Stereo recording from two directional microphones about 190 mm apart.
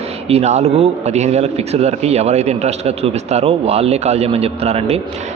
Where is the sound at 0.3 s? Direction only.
35° right (ahead or behind).